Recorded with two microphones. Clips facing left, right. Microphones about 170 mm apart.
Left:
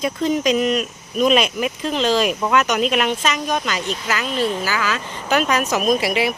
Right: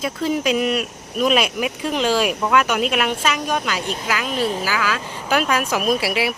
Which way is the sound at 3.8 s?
50° right (ahead or behind).